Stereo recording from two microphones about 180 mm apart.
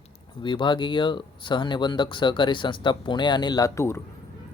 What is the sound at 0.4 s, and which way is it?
Speech, 25° left (ahead or behind).